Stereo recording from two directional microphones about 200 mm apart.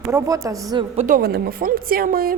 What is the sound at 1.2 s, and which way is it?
A woman's voice, 50° right (ahead or behind).